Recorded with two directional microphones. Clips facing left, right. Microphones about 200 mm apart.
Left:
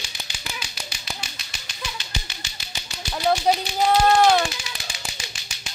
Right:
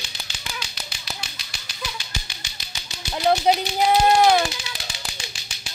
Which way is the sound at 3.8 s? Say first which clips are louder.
Left 1 dB; 15° right (ahead or behind).